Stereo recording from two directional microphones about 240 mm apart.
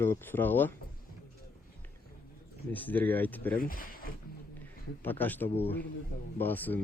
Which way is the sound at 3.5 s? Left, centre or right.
Left.